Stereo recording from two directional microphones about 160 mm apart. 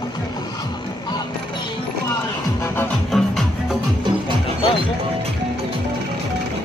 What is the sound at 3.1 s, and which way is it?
Music, centre (ahead or behind).